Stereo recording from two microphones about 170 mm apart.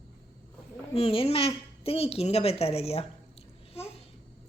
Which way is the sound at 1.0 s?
35° left (ahead or behind).